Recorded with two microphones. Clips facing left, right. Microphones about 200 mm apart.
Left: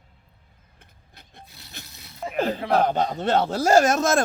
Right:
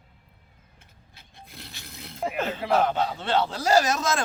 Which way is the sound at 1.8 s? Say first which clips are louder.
Right 7 dB; 55° right (ahead or behind).